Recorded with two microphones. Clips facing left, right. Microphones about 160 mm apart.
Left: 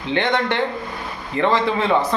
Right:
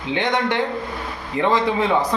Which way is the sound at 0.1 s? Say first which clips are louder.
Left 1 dB; 10° right (ahead or behind).